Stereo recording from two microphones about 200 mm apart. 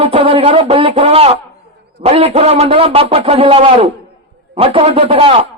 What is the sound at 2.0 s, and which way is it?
A man's voice, 30° right (ahead or behind).